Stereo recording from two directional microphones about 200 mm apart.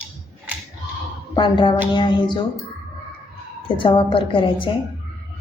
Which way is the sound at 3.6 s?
25° left (ahead or behind).